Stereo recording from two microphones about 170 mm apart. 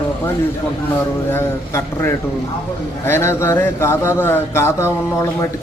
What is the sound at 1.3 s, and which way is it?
Speech, 15° left (ahead or behind).